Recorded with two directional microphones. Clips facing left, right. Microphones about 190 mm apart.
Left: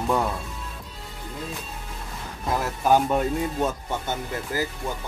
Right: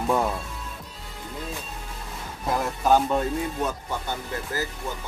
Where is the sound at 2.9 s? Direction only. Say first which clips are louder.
Left 1 dB; 15° left (ahead or behind).